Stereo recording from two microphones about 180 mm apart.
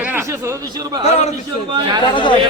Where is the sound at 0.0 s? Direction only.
10° right (ahead or behind).